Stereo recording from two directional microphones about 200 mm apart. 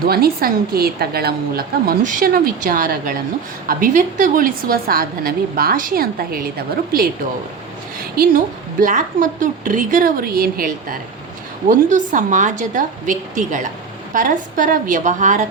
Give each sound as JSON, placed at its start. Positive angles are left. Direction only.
{"t": 0.0, "sound": "a woman's voice", "side_deg": -50}
{"t": 8.1, "sound": "a woman's voice", "side_deg": -45}